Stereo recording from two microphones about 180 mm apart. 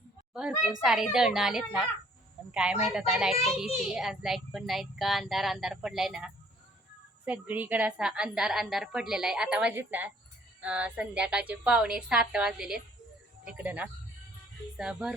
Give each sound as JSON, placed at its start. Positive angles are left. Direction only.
{"t": 0.7, "sound": "a child's voice", "side_deg": 0}